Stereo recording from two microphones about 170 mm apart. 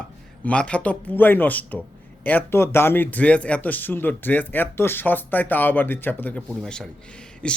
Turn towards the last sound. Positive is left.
turn(degrees=5)  # may be behind; listen again after turning